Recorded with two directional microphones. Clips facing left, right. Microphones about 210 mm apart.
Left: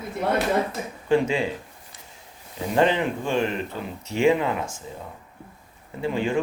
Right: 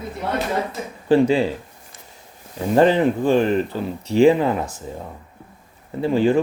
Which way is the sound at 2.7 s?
40° right (ahead or behind).